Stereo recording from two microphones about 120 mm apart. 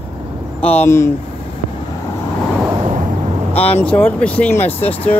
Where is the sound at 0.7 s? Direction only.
20° left (ahead or behind).